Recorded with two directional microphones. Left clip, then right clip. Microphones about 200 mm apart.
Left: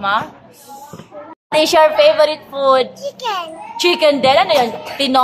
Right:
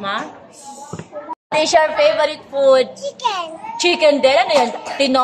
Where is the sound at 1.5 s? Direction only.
25° left (ahead or behind).